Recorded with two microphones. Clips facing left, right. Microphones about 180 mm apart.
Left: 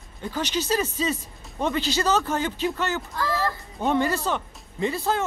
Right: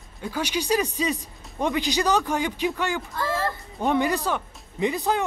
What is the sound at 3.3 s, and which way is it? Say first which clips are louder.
Music: even; centre (ahead or behind).